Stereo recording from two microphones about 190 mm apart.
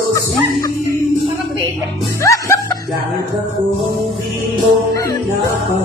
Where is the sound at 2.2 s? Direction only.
15° left (ahead or behind).